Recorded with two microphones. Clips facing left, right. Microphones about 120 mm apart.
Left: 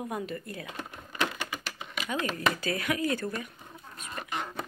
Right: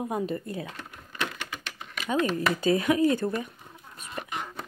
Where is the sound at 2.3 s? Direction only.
20° right (ahead or behind).